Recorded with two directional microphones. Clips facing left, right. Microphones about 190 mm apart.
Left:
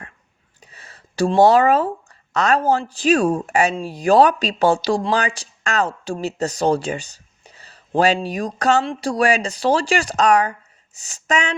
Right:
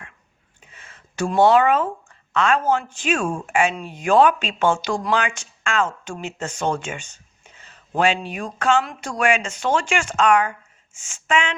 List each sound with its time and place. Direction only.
0.6 s speech: 35° left (ahead or behind)